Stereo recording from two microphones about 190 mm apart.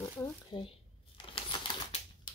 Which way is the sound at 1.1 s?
25° left (ahead or behind).